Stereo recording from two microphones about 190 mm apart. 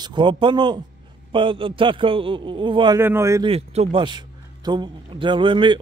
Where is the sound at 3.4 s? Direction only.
30° right (ahead or behind).